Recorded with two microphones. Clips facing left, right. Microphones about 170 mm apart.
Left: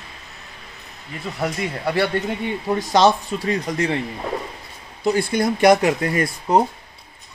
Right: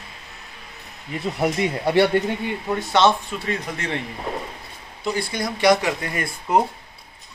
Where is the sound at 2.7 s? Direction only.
40° left (ahead or behind).